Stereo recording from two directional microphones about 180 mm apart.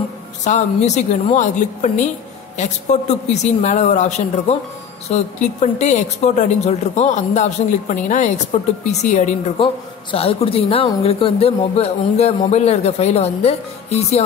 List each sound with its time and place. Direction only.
0.4 s speech: 40° left (ahead or behind)